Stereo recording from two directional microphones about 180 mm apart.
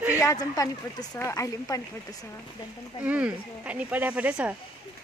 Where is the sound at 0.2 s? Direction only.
20° left (ahead or behind).